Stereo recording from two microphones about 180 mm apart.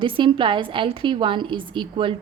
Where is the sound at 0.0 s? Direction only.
25° right (ahead or behind).